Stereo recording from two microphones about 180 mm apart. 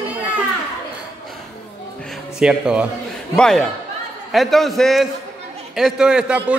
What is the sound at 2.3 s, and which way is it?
A man's voice, 5° right (ahead or behind).